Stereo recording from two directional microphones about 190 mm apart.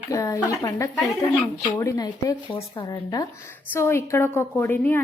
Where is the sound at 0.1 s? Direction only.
15° left (ahead or behind).